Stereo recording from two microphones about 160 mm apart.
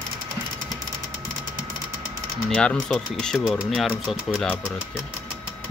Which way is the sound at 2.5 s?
5° left (ahead or behind).